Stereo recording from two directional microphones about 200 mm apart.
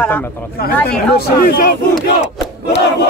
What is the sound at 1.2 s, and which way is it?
Speech, 50° left (ahead or behind).